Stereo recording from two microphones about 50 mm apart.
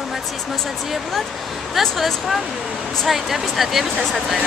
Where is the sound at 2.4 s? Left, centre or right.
Centre.